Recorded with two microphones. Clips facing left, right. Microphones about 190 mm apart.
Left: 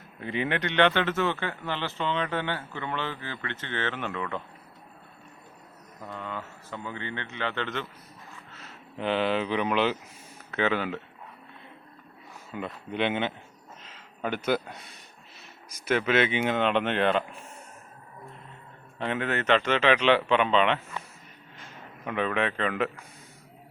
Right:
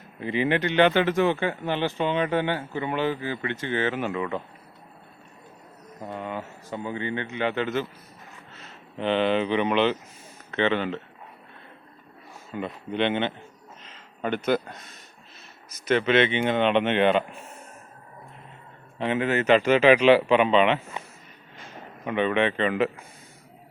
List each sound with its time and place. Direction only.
0.2 s a man's voice: centre (ahead or behind)
6.0 s a man's voice: 20° right (ahead or behind)
8.5 s speech: 5° left (ahead or behind)
12.5 s speech: 5° left (ahead or behind)
13.8 s a sound: centre (ahead or behind)
15.7 s speech: 10° left (ahead or behind)
18.9 s a man's voice: 5° right (ahead or behind)
20.9 s a sound: 20° right (ahead or behind)
22.0 s speech: centre (ahead or behind)